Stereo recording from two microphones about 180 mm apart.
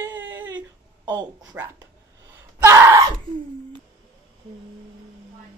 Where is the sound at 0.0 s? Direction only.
10° right (ahead or behind).